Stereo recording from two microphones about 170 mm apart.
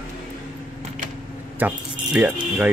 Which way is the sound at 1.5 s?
10° right (ahead or behind).